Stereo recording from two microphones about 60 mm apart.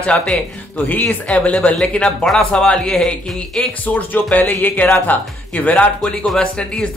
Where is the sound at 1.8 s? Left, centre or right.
Centre.